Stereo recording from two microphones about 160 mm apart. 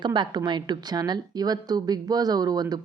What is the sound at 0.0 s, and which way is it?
A woman's voice, 30° right (ahead or behind).